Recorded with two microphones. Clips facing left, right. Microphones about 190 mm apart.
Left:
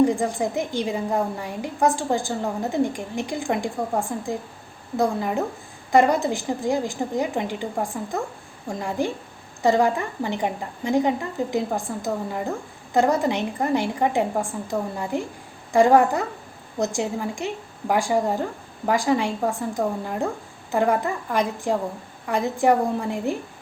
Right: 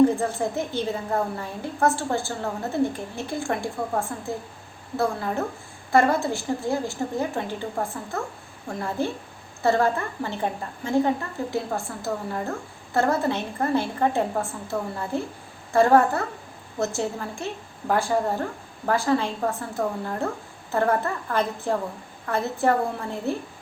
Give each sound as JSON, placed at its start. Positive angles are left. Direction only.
{"t": 0.0, "sound": "a woman's voice", "side_deg": 15}